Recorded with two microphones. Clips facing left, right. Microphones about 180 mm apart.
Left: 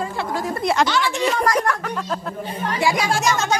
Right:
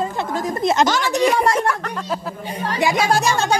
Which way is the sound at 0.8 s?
45° right (ahead or behind).